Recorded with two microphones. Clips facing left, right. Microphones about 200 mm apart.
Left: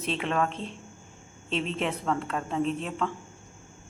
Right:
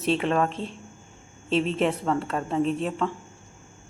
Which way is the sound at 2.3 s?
35° right (ahead or behind).